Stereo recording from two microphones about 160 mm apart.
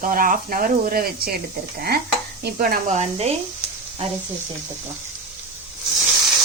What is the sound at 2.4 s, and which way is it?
Stir, 65° right (ahead or behind).